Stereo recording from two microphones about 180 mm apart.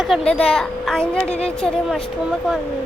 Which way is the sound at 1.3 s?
35° left (ahead or behind).